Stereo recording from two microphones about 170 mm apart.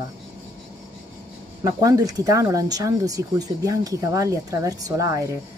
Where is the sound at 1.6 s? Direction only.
20° right (ahead or behind).